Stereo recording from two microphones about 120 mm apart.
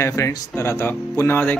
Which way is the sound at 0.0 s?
25° left (ahead or behind).